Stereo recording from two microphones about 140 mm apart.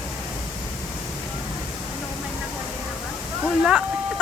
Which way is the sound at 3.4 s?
5° right (ahead or behind).